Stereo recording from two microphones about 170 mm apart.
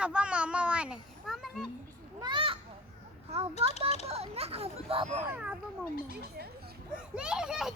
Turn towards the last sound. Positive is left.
turn(degrees=-5)  # may be behind; listen again after turning